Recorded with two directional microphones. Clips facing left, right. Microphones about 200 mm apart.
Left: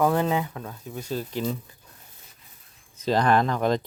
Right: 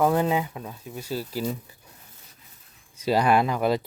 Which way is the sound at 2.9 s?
10° right (ahead or behind).